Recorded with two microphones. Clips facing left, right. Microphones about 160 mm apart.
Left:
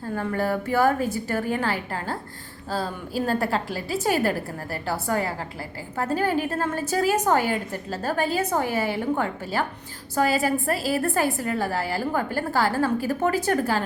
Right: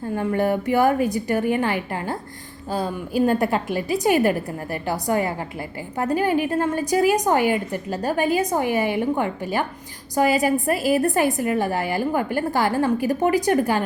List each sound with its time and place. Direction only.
0.2 s a woman's voice: 15° right (ahead or behind)